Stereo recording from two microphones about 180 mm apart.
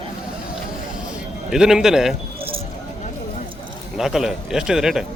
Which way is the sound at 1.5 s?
5° right (ahead or behind).